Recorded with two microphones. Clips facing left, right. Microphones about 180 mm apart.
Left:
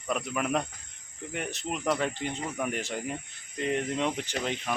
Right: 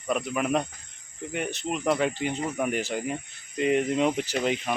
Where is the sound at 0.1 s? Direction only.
5° right (ahead or behind).